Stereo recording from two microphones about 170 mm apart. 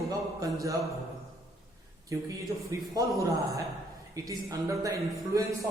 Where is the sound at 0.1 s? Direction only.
20° right (ahead or behind).